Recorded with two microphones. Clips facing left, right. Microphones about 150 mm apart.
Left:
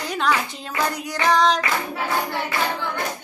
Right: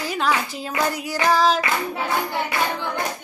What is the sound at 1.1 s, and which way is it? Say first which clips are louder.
Child singing: even; 5° right (ahead or behind).